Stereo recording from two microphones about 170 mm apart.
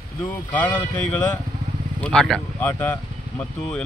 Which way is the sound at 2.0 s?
5° left (ahead or behind).